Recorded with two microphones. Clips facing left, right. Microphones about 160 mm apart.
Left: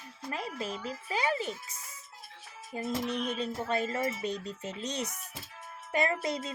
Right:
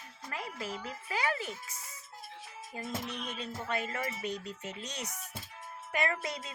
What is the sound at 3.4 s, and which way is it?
Music, 30° left (ahead or behind).